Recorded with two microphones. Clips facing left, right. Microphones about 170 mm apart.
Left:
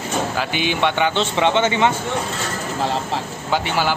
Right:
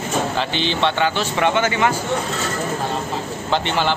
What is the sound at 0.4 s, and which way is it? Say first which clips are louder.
A man's voice: even; 10° left (ahead or behind).